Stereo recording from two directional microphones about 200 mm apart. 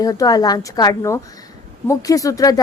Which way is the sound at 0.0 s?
20° left (ahead or behind).